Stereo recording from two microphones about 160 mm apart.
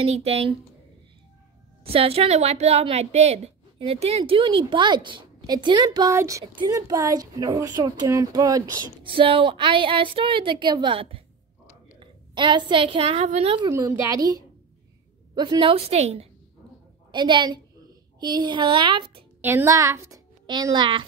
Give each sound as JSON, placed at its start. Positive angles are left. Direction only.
{"t": 0.0, "sound": "a woman's voice", "side_deg": -40}
{"t": 1.9, "sound": "a woman's voice", "side_deg": -35}
{"t": 9.1, "sound": "a woman's voice", "side_deg": -35}
{"t": 13.7, "sound": "a woman's voice", "side_deg": -20}
{"t": 17.1, "sound": "a woman's voice", "side_deg": -30}
{"t": 19.4, "sound": "a child's voice", "side_deg": -15}